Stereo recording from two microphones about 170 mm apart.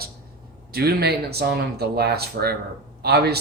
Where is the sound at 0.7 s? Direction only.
65° right (ahead or behind).